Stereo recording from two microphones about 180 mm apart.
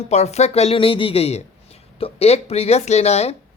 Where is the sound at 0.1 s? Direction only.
40° left (ahead or behind).